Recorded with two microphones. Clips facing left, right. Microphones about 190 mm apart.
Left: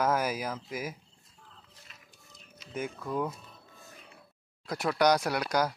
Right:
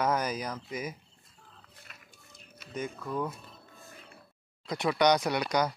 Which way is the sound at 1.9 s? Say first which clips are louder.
Right 3 dB; 60° right (ahead or behind).